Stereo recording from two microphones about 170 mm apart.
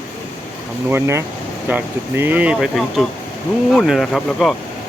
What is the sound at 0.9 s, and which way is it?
Speech, 15° right (ahead or behind).